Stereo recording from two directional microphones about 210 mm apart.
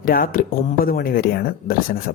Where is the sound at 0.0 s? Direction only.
40° left (ahead or behind).